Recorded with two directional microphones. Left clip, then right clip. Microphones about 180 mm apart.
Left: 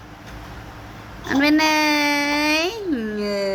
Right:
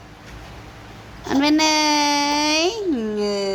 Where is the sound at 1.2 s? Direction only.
15° right (ahead or behind).